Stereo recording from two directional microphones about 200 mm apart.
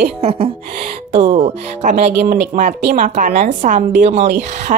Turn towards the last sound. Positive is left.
turn(degrees=-35)  # may be behind; listen again after turning